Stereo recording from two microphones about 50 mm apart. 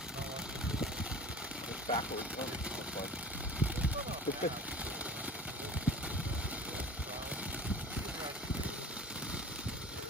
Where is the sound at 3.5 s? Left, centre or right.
Right.